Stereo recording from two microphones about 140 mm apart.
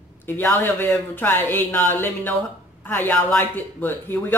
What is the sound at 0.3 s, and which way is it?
Speech, 15° left (ahead or behind).